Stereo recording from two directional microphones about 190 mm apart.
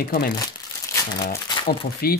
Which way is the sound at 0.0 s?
50° left (ahead or behind).